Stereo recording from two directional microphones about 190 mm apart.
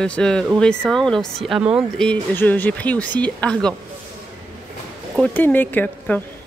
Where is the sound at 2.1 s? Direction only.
10° left (ahead or behind).